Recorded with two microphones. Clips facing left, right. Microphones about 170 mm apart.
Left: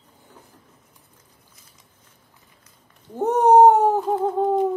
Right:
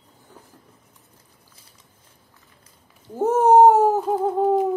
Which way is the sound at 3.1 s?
5° right (ahead or behind).